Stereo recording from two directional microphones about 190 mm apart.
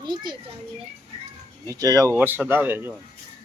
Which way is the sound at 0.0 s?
25° right (ahead or behind).